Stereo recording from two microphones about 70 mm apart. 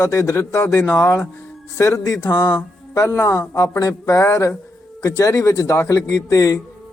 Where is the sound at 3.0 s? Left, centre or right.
Left.